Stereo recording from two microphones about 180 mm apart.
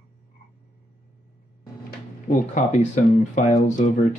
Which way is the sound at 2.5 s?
40° left (ahead or behind).